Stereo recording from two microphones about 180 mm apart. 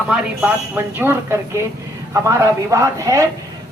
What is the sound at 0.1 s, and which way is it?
Speech, 10° right (ahead or behind).